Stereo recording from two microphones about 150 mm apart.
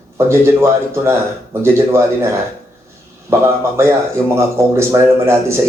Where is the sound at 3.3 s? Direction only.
15° right (ahead or behind).